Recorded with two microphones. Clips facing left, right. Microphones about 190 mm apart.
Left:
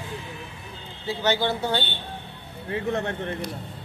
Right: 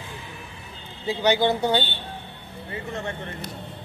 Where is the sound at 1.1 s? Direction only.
15° right (ahead or behind).